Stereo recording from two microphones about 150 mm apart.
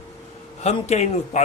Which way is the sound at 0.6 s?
45° left (ahead or behind).